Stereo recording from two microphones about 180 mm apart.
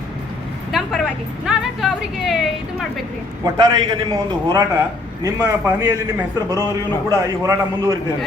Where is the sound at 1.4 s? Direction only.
Centre (ahead or behind).